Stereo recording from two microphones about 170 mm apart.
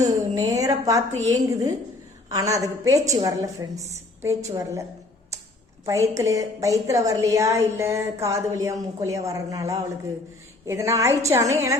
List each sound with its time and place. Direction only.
0.0 s a sound: 20° right (ahead or behind)
1.3 s a woman's voice: 20° right (ahead or behind)
5.8 s a woman's voice: 20° right (ahead or behind)